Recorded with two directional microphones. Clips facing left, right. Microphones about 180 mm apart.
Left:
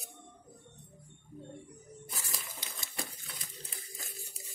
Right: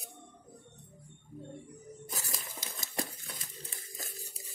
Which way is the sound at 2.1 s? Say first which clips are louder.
Right 2 dB; 40° right (ahead or behind).